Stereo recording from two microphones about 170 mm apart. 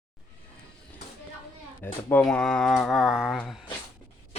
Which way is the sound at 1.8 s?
10° left (ahead or behind).